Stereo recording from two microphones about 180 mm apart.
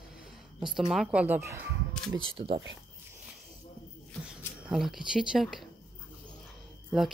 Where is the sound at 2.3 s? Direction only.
30° right (ahead or behind).